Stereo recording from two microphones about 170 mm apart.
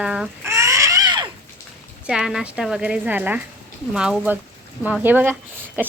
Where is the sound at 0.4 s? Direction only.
15° right (ahead or behind).